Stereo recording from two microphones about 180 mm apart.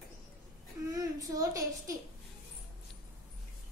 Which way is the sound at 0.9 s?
20° right (ahead or behind).